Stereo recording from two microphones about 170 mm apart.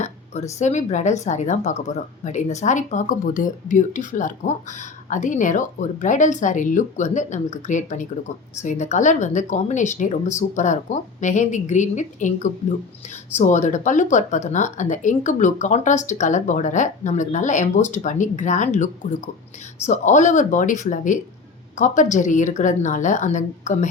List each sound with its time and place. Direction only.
0.6 s a woman's voice: 45° left (ahead or behind)
19.9 s a woman's voice: 45° left (ahead or behind)